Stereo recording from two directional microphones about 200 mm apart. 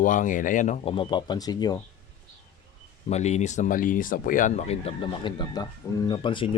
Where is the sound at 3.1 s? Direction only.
35° left (ahead or behind).